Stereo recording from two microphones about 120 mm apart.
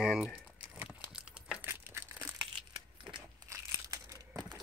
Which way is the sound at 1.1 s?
5° right (ahead or behind).